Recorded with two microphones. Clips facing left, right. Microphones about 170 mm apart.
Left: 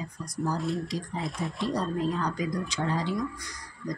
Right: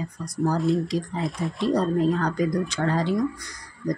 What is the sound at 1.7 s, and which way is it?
Speech, 60° right (ahead or behind).